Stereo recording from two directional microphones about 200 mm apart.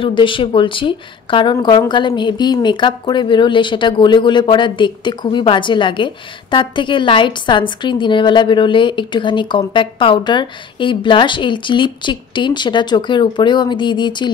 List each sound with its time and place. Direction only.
0.0 s speech: 25° left (ahead or behind)